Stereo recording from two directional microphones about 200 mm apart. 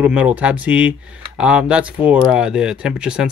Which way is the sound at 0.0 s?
5° right (ahead or behind).